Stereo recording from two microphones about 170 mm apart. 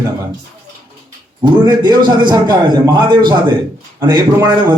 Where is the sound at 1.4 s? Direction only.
25° right (ahead or behind).